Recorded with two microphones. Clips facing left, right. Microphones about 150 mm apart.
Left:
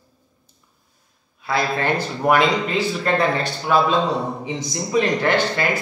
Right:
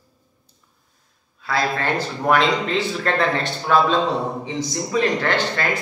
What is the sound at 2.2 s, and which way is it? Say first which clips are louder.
A man's voice: left 1 dB; 10° left (ahead or behind).